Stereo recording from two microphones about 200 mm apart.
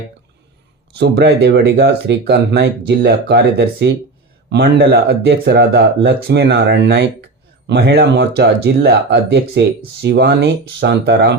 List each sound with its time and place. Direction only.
0.9 s speech: 55° right (ahead or behind)